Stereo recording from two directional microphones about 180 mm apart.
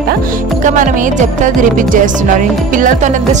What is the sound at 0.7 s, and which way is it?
A woman's voice, 45° right (ahead or behind).